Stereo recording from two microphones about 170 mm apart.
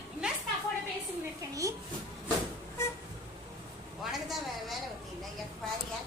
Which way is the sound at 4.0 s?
Centre (ahead or behind).